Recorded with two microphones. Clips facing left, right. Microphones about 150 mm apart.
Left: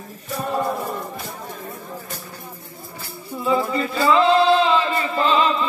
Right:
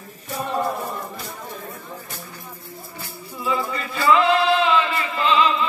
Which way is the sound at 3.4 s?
35° left (ahead or behind).